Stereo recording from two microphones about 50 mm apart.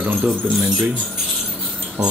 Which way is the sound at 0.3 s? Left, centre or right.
Centre.